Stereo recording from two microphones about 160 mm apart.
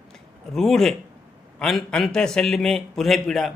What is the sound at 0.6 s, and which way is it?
A man's voice, centre (ahead or behind).